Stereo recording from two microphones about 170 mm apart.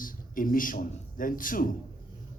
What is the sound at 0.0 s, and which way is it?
A man's voice, 55° left (ahead or behind).